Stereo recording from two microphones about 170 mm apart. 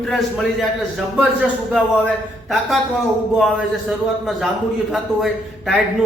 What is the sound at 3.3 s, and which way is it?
A man's voice, 5° right (ahead or behind).